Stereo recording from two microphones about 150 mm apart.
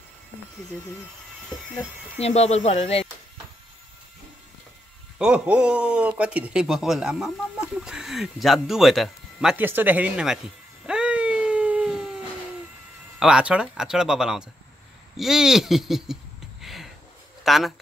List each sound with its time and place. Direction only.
2.1 s speech: 45° left (ahead or behind)
5.2 s speech: 5° right (ahead or behind)
10.9 s a sound: 5° right (ahead or behind)
13.2 s speech: 5° right (ahead or behind)
16.6 s a sound: centre (ahead or behind)
17.4 s speech: centre (ahead or behind)